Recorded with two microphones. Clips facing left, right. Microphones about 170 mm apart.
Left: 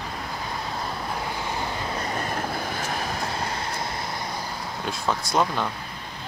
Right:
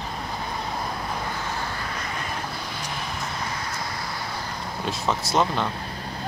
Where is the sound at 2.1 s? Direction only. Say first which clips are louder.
Left 4 dB; 50° left (ahead or behind).